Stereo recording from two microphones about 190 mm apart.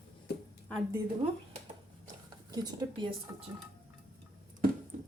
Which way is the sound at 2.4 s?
20° right (ahead or behind).